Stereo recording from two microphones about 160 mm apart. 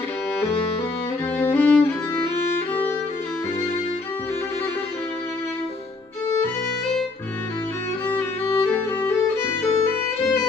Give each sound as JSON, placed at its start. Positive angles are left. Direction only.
{"t": 1.4, "sound": "music", "side_deg": 10}
{"t": 8.2, "sound": "music", "side_deg": 15}